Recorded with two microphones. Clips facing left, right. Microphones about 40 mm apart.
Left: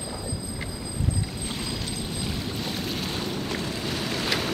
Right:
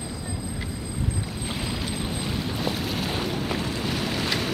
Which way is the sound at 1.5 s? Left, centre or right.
Centre.